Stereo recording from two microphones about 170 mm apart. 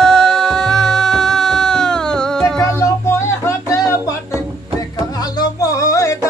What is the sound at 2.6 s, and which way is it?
Music, 15° left (ahead or behind).